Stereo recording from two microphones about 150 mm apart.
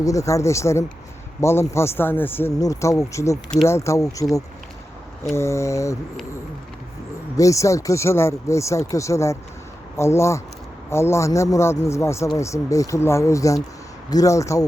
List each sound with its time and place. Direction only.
0.0 s speech: 20° left (ahead or behind)
7.3 s speech: 20° left (ahead or behind)